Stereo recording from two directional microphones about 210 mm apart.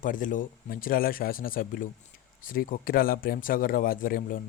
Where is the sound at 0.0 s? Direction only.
40° left (ahead or behind).